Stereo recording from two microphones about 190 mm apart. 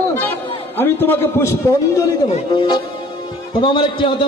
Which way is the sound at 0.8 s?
10° left (ahead or behind).